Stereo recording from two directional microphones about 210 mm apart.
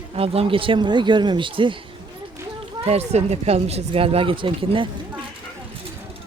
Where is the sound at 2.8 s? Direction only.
30° right (ahead or behind).